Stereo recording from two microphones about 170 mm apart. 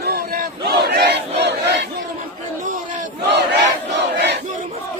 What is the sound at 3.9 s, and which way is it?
Crowd, 90° right.